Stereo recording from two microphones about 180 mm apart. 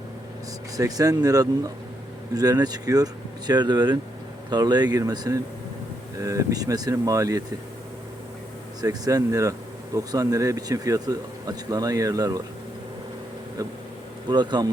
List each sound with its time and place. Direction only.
0.8 s speech: 20° right (ahead or behind)
8.8 s speech: 20° right (ahead or behind)
13.6 s speech: 20° right (ahead or behind)